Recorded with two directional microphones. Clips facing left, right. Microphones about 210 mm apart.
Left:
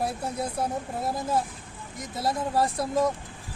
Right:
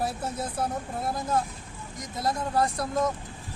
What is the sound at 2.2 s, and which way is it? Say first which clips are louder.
Speech: left 1 dB; 5° left (ahead or behind).